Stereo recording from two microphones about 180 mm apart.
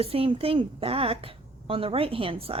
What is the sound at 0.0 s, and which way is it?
A woman's voice, 35° right (ahead or behind).